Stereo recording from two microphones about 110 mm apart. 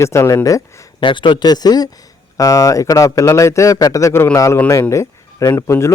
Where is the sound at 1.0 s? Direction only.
45° left (ahead or behind); by 5.9 s 25° left (ahead or behind).